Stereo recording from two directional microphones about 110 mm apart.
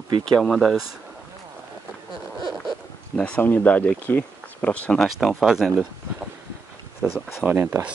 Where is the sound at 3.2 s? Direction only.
15° left (ahead or behind).